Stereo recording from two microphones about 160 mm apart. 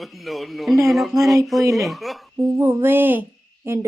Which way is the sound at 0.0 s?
Centre (ahead or behind).